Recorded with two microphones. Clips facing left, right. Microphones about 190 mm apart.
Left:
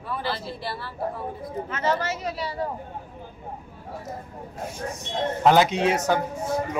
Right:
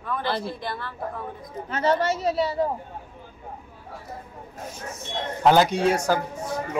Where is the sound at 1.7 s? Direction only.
35° right (ahead or behind).